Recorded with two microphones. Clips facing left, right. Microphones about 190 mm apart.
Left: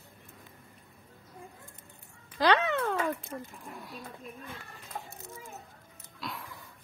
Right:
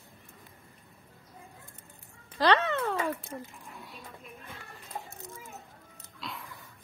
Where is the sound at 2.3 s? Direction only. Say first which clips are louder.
Even; centre (ahead or behind).